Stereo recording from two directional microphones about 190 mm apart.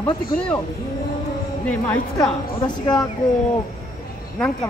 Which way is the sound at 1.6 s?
5° left (ahead or behind).